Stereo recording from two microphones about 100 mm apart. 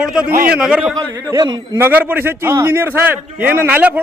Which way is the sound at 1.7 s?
20° right (ahead or behind).